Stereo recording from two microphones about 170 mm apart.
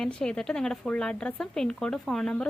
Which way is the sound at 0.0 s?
5° left (ahead or behind).